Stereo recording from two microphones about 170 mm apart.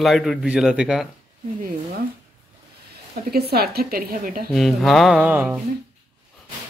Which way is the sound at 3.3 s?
65° right (ahead or behind).